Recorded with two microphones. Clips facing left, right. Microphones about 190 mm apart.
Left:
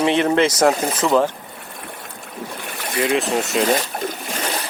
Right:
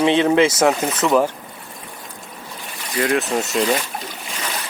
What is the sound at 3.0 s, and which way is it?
Speech, 5° left (ahead or behind).